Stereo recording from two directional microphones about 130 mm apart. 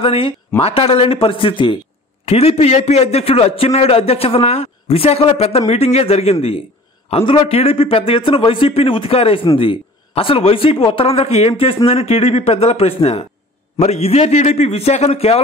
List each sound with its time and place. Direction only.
0.0 s a man's voice: 45° left (ahead or behind)
2.2 s a man's voice: 50° left (ahead or behind)